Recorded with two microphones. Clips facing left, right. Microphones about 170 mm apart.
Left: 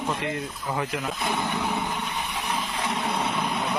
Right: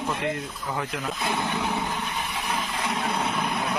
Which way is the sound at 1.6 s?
15° right (ahead or behind).